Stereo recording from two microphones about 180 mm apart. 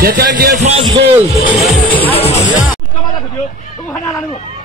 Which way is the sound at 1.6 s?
10° left (ahead or behind).